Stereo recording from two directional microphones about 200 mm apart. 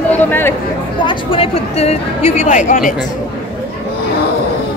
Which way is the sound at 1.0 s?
25° left (ahead or behind).